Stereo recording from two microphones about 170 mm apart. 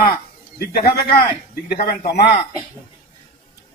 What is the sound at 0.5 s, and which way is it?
Speech, 65° left (ahead or behind).